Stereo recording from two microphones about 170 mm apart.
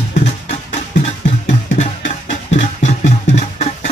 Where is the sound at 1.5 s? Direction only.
40° left (ahead or behind).